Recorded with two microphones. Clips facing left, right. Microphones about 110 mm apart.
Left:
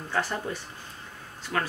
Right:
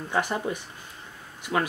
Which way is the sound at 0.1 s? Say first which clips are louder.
Right 3 dB; 15° right (ahead or behind).